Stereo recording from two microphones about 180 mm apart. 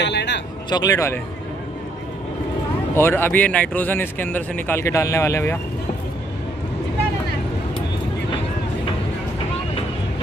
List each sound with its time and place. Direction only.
0.0 s speech: 75° left (ahead or behind)
0.7 s speech: 20° left (ahead or behind)
3.0 s speech: 10° left (ahead or behind)